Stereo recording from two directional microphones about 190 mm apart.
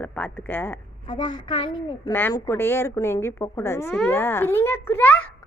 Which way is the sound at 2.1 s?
10° left (ahead or behind).